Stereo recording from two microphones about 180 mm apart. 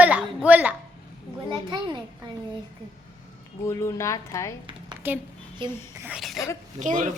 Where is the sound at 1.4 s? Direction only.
25° right (ahead or behind).